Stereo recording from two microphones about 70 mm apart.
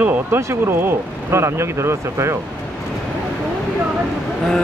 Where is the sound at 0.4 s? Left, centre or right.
Right.